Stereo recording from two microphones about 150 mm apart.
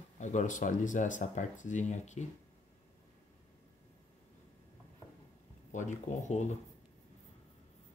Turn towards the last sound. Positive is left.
turn(degrees=50)  # may be behind; listen again after turning